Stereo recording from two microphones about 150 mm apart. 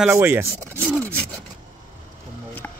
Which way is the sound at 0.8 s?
Centre (ahead or behind).